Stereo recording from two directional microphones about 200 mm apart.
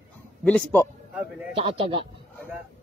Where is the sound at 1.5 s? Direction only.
25° right (ahead or behind).